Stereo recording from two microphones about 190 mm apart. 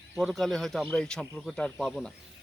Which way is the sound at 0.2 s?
Centre (ahead or behind).